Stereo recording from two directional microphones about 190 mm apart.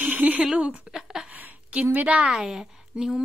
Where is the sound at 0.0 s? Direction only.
5° right (ahead or behind).